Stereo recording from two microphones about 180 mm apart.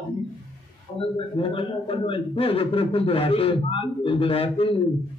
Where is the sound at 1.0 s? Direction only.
30° left (ahead or behind).